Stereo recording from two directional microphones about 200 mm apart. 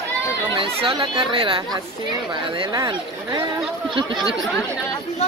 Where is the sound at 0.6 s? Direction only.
25° right (ahead or behind).